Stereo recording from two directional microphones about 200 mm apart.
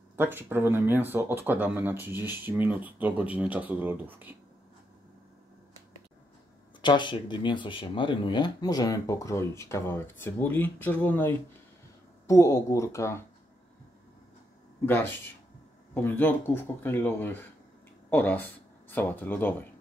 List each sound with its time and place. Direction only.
0.1 s speech: 10° right (ahead or behind)
6.8 s speech: 25° left (ahead or behind)
15.9 s speech: 10° left (ahead or behind)